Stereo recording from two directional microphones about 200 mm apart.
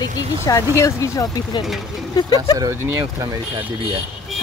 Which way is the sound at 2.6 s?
15° right (ahead or behind).